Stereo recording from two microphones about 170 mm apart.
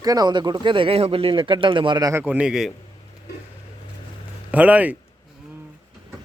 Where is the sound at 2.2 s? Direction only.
10° right (ahead or behind).